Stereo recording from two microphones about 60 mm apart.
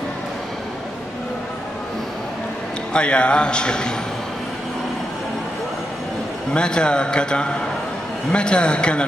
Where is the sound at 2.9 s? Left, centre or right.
Centre.